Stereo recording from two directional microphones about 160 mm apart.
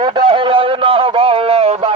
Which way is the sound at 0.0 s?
30° right (ahead or behind).